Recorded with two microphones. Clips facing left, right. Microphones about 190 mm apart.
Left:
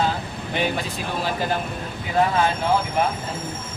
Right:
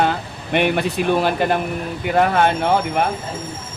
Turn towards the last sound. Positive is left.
turn(degrees=-65)  # may be behind; listen again after turning